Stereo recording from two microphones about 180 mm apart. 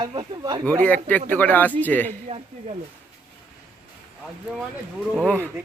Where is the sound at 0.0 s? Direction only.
25° right (ahead or behind).